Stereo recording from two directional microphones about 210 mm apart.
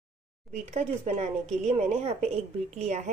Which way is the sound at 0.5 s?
35° right (ahead or behind).